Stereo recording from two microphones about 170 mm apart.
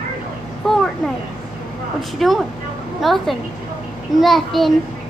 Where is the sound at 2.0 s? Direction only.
Centre (ahead or behind).